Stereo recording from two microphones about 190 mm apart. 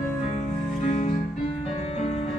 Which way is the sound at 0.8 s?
35° left (ahead or behind).